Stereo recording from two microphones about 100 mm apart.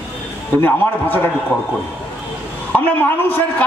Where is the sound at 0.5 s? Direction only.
20° left (ahead or behind).